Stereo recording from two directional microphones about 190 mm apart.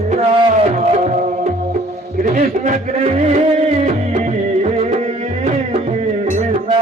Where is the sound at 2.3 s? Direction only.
40° right (ahead or behind).